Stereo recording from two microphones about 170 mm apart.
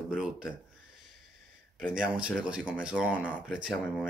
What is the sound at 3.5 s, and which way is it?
Speech, 5° right (ahead or behind).